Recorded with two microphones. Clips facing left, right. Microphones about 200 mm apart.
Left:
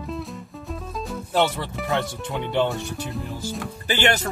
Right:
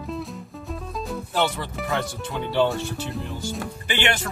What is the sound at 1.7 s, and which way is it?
Speech, centre (ahead or behind).